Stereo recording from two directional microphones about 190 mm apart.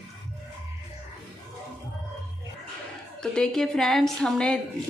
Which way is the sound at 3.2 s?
5° left (ahead or behind).